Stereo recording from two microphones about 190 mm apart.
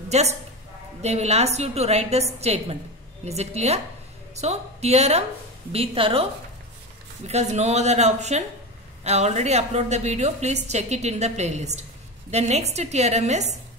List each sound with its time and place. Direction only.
0.1 s a woman's voice: 35° right (ahead or behind)
7.2 s a woman's voice: 35° right (ahead or behind)